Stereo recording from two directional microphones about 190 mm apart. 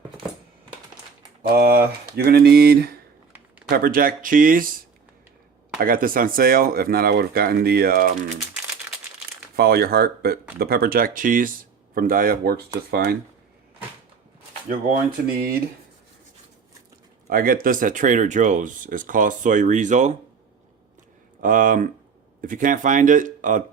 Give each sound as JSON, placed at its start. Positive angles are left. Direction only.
{"t": 1.4, "sound": "speech", "side_deg": -50}
{"t": 5.8, "sound": "speech", "side_deg": -50}
{"t": 9.6, "sound": "speech", "side_deg": -55}
{"t": 14.7, "sound": "speech", "side_deg": -50}
{"t": 17.2, "sound": "speech", "side_deg": -50}
{"t": 21.4, "sound": "speech", "side_deg": -45}